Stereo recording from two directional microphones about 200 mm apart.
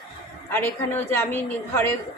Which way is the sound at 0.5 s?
10° left (ahead or behind).